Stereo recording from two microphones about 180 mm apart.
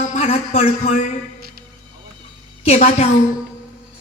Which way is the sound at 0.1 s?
35° left (ahead or behind).